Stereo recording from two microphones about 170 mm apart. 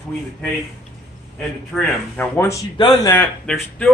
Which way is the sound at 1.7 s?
15° left (ahead or behind).